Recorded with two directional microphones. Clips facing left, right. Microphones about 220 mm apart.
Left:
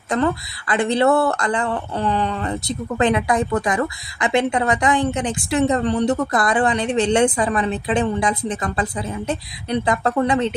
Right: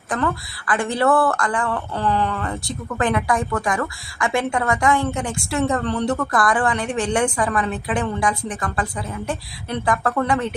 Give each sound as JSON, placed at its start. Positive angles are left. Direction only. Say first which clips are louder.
{"t": 0.1, "sound": "speech", "louder": "left 3 dB", "side_deg": 25}